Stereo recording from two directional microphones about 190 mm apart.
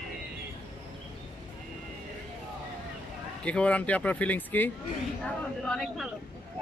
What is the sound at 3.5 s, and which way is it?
Speech, 5° left (ahead or behind).